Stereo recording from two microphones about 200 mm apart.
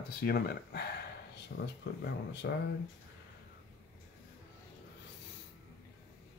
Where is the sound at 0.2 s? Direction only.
50° left (ahead or behind).